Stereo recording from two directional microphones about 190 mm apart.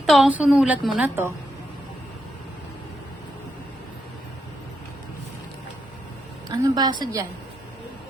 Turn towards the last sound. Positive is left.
turn(degrees=-20)  # may be behind; listen again after turning